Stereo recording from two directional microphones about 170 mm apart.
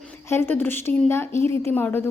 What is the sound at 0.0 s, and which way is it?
A woman's voice, 15° left (ahead or behind).